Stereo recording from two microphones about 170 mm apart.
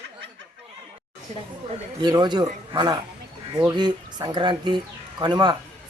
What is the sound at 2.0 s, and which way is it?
Speech, 25° right (ahead or behind).